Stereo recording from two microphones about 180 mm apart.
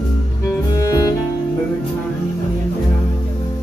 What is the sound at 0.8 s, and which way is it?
Music, 20° left (ahead or behind).